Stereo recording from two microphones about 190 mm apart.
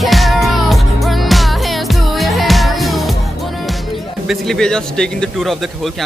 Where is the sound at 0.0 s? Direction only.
Centre (ahead or behind).